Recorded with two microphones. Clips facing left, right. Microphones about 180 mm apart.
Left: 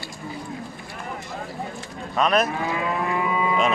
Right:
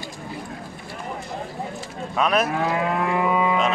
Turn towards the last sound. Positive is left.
turn(degrees=-65)  # may be behind; listen again after turning